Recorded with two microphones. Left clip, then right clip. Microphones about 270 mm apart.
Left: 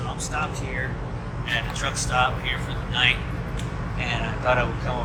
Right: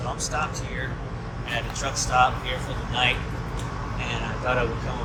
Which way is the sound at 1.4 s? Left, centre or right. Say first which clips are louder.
Left 2 dB; centre.